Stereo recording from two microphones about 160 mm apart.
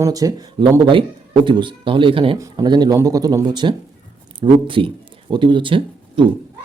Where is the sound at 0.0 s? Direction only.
20° right (ahead or behind).